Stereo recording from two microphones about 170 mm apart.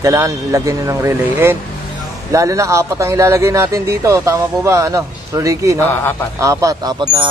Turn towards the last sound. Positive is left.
turn(degrees=-25)  # may be behind; listen again after turning